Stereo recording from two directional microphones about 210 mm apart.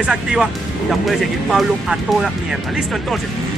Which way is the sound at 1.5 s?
Centre (ahead or behind).